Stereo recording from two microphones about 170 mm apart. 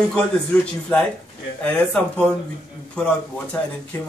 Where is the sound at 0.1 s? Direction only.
5° left (ahead or behind).